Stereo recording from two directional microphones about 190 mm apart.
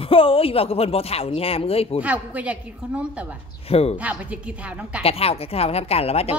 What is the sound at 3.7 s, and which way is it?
Speech, 30° left (ahead or behind).